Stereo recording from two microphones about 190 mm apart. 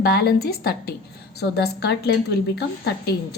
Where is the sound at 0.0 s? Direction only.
55° left (ahead or behind).